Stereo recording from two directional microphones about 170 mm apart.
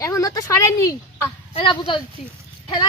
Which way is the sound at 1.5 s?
30° left (ahead or behind).